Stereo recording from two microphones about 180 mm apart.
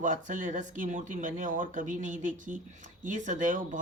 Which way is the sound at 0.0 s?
45° right (ahead or behind).